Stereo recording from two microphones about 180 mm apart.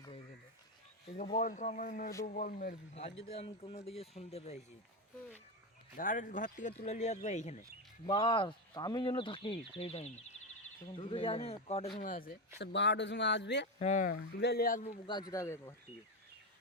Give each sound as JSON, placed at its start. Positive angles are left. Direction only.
{"t": 1.2, "sound": "speech", "side_deg": 50}
{"t": 2.9, "sound": "speech", "side_deg": 35}
{"t": 6.0, "sound": "speech", "side_deg": 50}
{"t": 8.0, "sound": "speech", "side_deg": 30}
{"t": 11.9, "sound": "speech", "side_deg": 50}
{"t": 12.5, "sound": "speech", "side_deg": 75}
{"t": 13.7, "sound": "speech", "side_deg": 40}
{"t": 14.1, "sound": "speech", "side_deg": 70}
{"t": 14.8, "sound": "speech", "side_deg": 25}
{"t": 15.3, "sound": "speech", "side_deg": 15}